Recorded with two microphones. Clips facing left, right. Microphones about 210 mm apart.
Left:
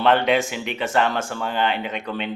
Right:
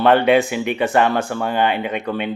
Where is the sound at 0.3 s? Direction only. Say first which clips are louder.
Right 6 dB; 55° right (ahead or behind).